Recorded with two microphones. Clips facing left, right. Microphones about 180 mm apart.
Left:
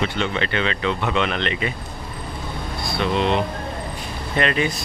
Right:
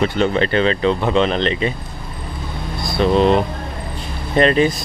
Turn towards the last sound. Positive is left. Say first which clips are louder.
# right 7 dB
turn(degrees=-35)  # may be behind; listen again after turning